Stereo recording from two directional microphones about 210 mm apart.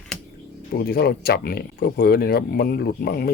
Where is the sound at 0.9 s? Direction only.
50° left (ahead or behind).